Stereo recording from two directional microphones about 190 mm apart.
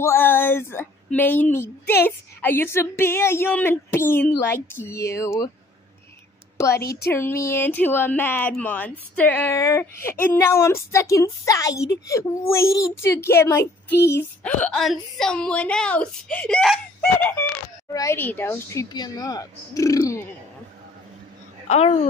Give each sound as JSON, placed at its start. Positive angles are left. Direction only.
{"t": 0.0, "sound": "a woman's voice", "side_deg": 10}
{"t": 6.8, "sound": "speech", "side_deg": 55}
{"t": 7.1, "sound": "a woman's voice", "side_deg": 10}
{"t": 21.6, "sound": "a woman's voice", "side_deg": 35}